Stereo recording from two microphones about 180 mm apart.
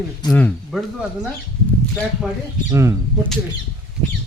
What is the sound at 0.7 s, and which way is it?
Speech, centre (ahead or behind).